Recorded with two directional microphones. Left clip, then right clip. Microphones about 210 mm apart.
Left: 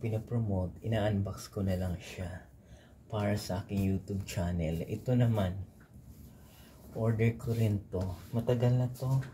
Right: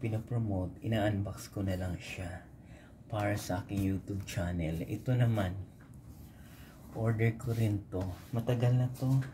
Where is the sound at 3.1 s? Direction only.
5° right (ahead or behind).